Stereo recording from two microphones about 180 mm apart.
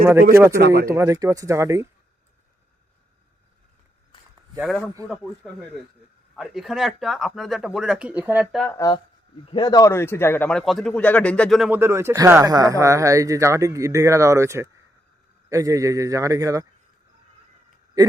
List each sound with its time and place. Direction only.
0.0 s speech: 15° right (ahead or behind)
4.1 s a sound: 25° left (ahead or behind)
4.5 s speech: centre (ahead or behind)
8.6 s speech: 15° left (ahead or behind)
11.7 s a man's voice: 15° right (ahead or behind)